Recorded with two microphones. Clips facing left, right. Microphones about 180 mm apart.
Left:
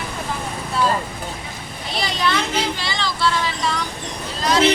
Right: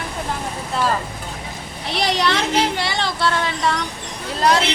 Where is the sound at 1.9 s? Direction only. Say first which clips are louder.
Right 2 dB; 75° right (ahead or behind).